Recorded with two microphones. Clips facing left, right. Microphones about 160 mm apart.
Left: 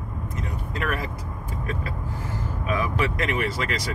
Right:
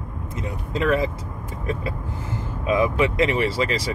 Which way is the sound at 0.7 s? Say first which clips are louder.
Right 9 dB; 25° right (ahead or behind).